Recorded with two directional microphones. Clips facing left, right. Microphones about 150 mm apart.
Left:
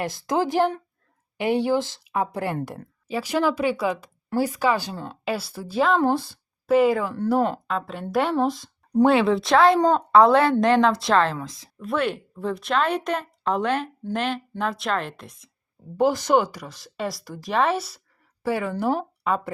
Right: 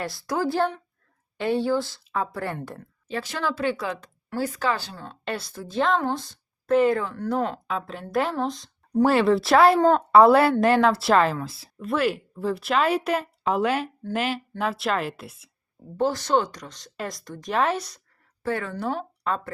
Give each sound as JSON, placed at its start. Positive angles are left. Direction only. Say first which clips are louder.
{"t": 0.0, "sound": "a woman's voice", "louder": "left 3 dB", "side_deg": 20}
{"t": 16.0, "sound": "a woman's voice", "louder": "left 3 dB", "side_deg": 10}